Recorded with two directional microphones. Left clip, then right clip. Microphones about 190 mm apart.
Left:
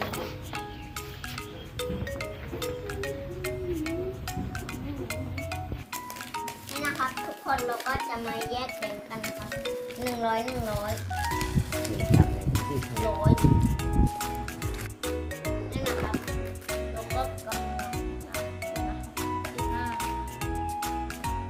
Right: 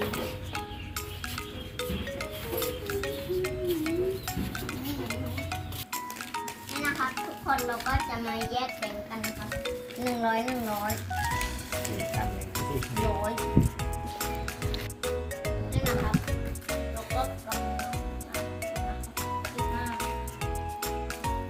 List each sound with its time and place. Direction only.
1.8 s music: centre (ahead or behind)